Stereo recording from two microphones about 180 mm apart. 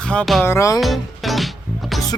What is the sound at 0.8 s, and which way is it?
Music, centre (ahead or behind).